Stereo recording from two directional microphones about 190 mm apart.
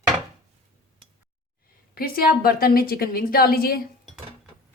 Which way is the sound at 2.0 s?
50° left (ahead or behind).